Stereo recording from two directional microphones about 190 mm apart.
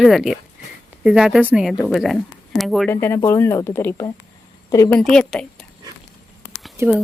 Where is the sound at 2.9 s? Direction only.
15° left (ahead or behind).